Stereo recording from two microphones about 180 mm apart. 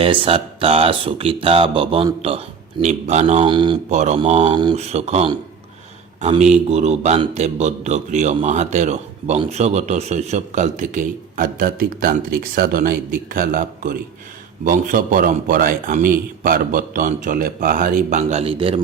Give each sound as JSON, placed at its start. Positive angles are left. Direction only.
{"t": 0.0, "sound": "speech", "side_deg": -30}
{"t": 3.4, "sound": "speech", "side_deg": -25}
{"t": 3.9, "sound": "speech", "side_deg": -40}
{"t": 6.3, "sound": "a man's voice", "side_deg": -40}